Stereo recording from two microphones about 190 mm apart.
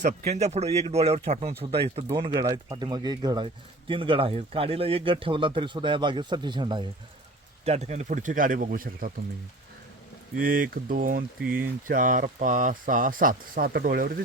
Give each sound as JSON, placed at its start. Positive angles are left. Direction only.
{"t": 0.3, "sound": "speech", "side_deg": -35}
{"t": 7.6, "sound": "speech", "side_deg": -35}
{"t": 10.3, "sound": "speech", "side_deg": -45}